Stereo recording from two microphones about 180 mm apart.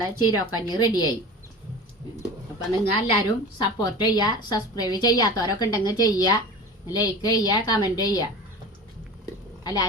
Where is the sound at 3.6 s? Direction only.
25° left (ahead or behind).